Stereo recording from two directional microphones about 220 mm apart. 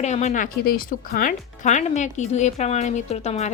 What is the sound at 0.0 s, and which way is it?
A woman's voice, 30° left (ahead or behind).